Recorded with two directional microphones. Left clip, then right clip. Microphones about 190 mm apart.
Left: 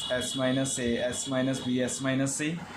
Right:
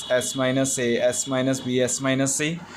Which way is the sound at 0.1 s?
50° right (ahead or behind).